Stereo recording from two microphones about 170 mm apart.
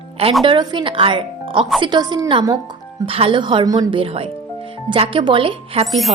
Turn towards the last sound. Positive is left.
turn(degrees=0)  # may be behind; listen again after turning